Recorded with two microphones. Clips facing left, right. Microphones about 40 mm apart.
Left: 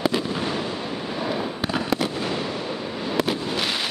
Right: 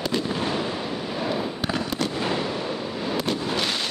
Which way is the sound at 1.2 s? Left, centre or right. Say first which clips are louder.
Left 1 dB; centre.